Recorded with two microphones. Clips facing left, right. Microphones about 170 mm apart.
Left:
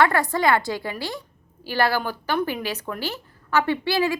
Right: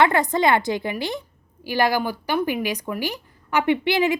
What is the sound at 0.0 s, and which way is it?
Speech, 20° right (ahead or behind).